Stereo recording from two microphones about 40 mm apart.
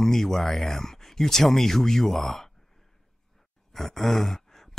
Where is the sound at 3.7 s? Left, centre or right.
Centre.